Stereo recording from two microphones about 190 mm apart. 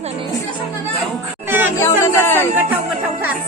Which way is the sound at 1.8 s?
15° left (ahead or behind).